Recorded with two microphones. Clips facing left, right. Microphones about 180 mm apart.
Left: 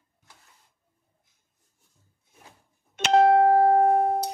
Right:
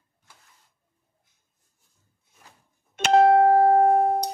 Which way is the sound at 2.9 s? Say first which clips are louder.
Right 1 dB; 50° right (ahead or behind).